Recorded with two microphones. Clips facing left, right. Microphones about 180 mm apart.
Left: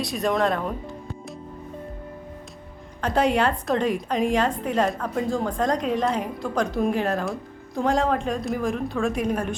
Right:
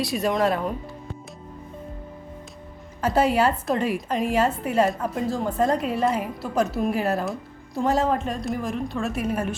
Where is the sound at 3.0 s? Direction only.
5° right (ahead or behind).